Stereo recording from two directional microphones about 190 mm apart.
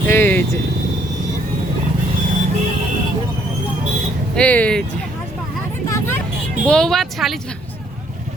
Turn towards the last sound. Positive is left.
turn(degrees=0)  # may be behind; listen again after turning